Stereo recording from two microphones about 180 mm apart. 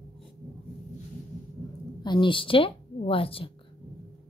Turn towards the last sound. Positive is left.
turn(degrees=30)  # may be behind; listen again after turning